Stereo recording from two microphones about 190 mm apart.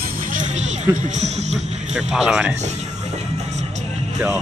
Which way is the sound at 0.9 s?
40° right (ahead or behind).